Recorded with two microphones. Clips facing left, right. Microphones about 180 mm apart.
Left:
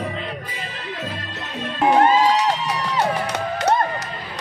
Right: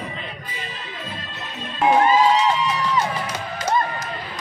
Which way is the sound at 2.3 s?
70° left (ahead or behind).